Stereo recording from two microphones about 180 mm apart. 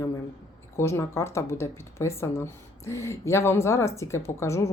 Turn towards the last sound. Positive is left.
turn(degrees=15)  # may be behind; listen again after turning